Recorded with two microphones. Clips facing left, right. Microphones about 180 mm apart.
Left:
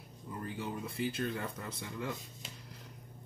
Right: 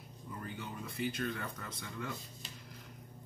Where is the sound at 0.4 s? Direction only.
30° left (ahead or behind).